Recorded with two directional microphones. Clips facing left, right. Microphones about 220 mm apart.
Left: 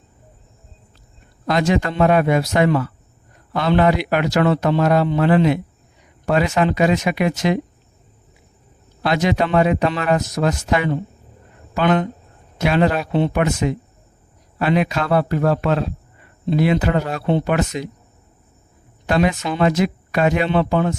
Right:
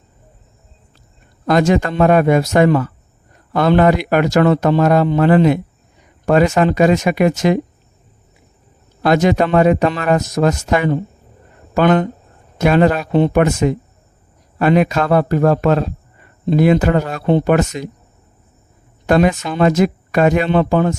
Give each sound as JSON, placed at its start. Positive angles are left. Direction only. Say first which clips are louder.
{"t": 1.5, "sound": "a man's voice", "louder": "right 4 dB", "side_deg": -50}
{"t": 9.0, "sound": "a man's voice", "louder": "right 5 dB", "side_deg": -45}
{"t": 19.0, "sound": "a man's voice", "louder": "right 4 dB", "side_deg": -45}